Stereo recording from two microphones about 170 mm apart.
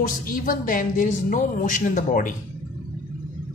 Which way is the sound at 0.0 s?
55° left (ahead or behind).